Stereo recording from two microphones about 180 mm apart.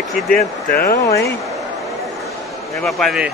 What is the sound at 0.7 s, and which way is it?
Speech, 55° left (ahead or behind).